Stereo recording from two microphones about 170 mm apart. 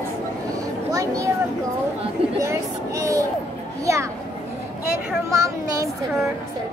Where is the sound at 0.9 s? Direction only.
20° right (ahead or behind).